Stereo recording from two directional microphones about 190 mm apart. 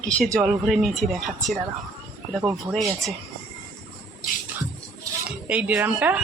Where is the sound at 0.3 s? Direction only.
Centre (ahead or behind).